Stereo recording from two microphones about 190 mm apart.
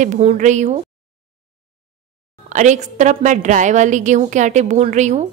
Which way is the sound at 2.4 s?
40° right (ahead or behind).